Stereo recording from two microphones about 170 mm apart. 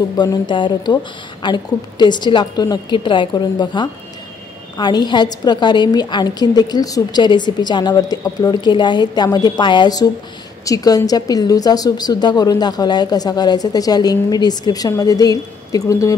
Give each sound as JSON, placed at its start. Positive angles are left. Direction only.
{"t": 0.2, "sound": "speech", "side_deg": 25}